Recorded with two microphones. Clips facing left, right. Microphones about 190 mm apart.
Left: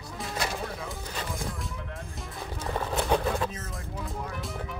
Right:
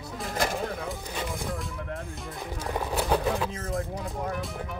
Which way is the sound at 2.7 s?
5° right (ahead or behind).